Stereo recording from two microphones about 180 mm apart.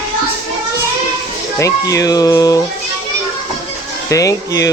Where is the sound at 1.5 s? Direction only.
20° left (ahead or behind).